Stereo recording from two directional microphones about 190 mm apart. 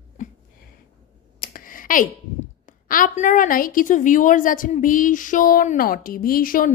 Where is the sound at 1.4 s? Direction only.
50° left (ahead or behind).